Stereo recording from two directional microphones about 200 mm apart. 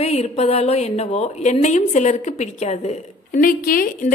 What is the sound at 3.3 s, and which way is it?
Speech, 45° left (ahead or behind).